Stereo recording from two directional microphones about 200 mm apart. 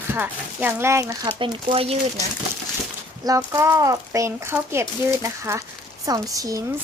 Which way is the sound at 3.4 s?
15° right (ahead or behind).